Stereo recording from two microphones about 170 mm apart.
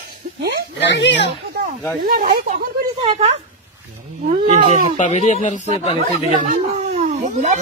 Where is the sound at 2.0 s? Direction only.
55° right (ahead or behind).